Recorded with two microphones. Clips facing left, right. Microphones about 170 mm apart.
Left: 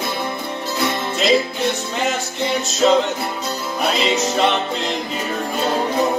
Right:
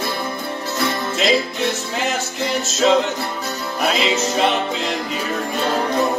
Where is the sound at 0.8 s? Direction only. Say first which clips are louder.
Even; 20° left (ahead or behind).